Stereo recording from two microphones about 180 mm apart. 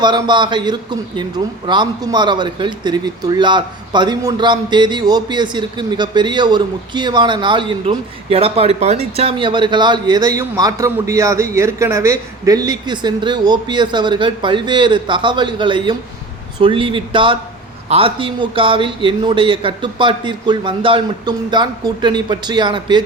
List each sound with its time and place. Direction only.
0.0 s speech: 25° right (ahead or behind)